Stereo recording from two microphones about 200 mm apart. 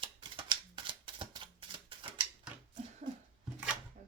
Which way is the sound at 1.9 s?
25° right (ahead or behind).